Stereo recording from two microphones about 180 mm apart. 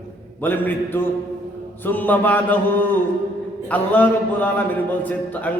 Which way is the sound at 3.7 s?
10° left (ahead or behind).